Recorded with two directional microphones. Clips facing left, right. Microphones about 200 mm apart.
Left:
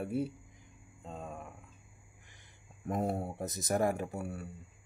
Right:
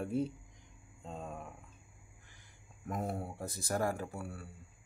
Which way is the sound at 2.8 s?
25° left (ahead or behind).